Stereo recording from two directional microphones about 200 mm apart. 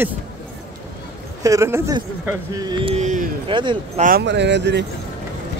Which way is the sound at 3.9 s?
45° right (ahead or behind).